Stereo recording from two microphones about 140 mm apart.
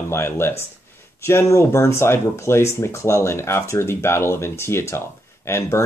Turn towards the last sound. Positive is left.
turn(degrees=20)  # may be behind; listen again after turning